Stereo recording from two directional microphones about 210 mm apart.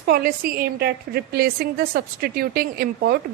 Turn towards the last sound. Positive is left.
turn(degrees=-45)  # may be behind; listen again after turning